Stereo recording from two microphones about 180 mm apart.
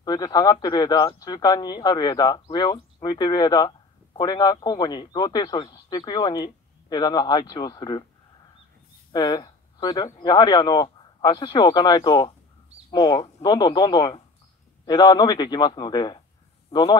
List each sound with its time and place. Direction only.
0.0 s a man's voice: 20° left (ahead or behind)
9.1 s a man's voice: 25° left (ahead or behind)